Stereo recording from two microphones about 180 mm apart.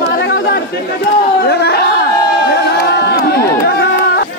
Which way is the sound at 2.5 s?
65° left (ahead or behind).